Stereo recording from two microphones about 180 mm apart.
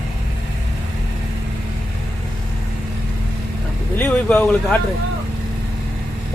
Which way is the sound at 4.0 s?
10° left (ahead or behind).